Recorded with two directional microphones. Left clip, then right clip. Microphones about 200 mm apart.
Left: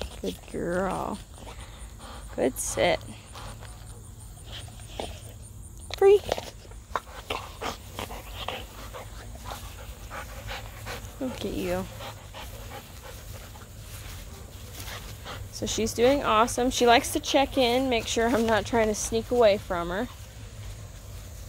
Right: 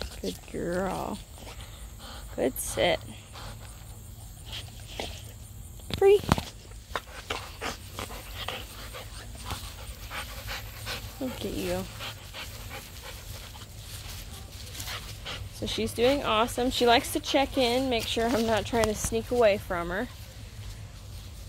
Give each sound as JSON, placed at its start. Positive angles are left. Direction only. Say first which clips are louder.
{"t": 0.0, "sound": "a sound", "louder": "left 2 dB", "side_deg": 15}
{"t": 0.5, "sound": "speech", "louder": "left 2 dB", "side_deg": 5}
{"t": 2.0, "sound": "a sound", "louder": "left 2 dB", "side_deg": 5}
{"t": 4.5, "sound": "walk", "louder": "right 2 dB", "side_deg": 10}
{"t": 5.9, "sound": "speech", "louder": "left 2 dB", "side_deg": 5}
{"t": 6.9, "sound": "walk", "louder": "left 3 dB", "side_deg": 0}
{"t": 7.2, "sound": "dog", "louder": "left 1 dB", "side_deg": 10}
{"t": 10.3, "sound": "pant", "louder": "even", "side_deg": 5}
{"t": 11.3, "sound": "dog", "louder": "left 2 dB", "side_deg": 10}
{"t": 14.9, "sound": "a sound", "louder": "right 2 dB", "side_deg": 0}
{"t": 15.6, "sound": "speech", "louder": "left 2 dB", "side_deg": 40}
{"t": 16.0, "sound": "a woman's voice", "louder": "left 3 dB", "side_deg": 10}
{"t": 19.0, "sound": "speech", "louder": "left 2 dB", "side_deg": 0}